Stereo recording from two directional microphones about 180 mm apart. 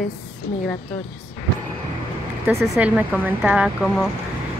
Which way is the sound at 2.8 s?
10° right (ahead or behind).